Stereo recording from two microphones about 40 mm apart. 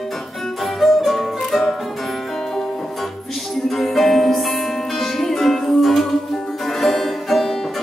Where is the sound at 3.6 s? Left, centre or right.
Centre.